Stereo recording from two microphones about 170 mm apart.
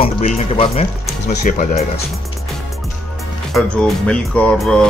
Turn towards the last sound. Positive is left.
turn(degrees=5)  # may be behind; listen again after turning